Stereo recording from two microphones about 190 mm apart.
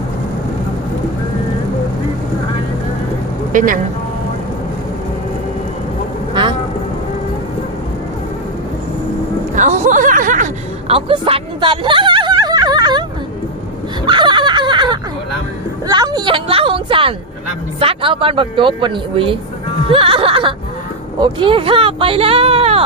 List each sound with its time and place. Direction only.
3.5 s speech: 45° right (ahead or behind)
9.6 s music: 40° right (ahead or behind); by 13.1 s 20° right (ahead or behind)
14.1 s a sound: 25° right (ahead or behind)
17.7 s speech: 30° right (ahead or behind)
19.9 s music: 30° right (ahead or behind)
21.2 s speech: 25° right (ahead or behind)